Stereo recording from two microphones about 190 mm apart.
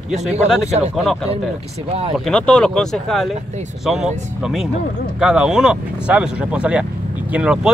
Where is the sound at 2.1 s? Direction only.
5° left (ahead or behind).